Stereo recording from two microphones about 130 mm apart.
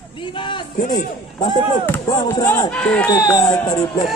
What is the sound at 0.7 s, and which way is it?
Speech, 85° left.